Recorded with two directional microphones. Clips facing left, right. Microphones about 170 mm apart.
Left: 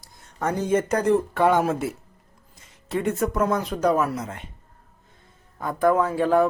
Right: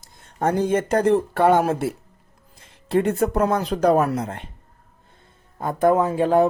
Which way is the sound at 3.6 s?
35° right (ahead or behind).